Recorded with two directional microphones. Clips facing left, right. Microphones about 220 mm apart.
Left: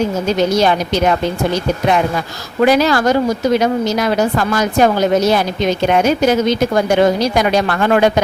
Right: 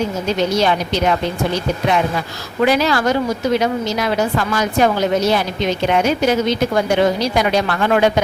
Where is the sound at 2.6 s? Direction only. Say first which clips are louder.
Left 3 dB; 45° left (ahead or behind).